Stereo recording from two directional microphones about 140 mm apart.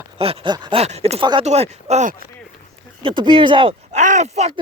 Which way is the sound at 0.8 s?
50° right (ahead or behind).